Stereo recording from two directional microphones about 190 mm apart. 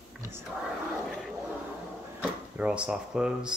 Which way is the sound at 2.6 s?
5° right (ahead or behind).